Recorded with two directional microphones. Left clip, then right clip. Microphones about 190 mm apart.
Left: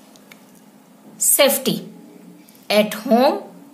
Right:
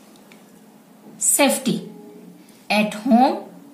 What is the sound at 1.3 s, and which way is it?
Speech, 40° left (ahead or behind).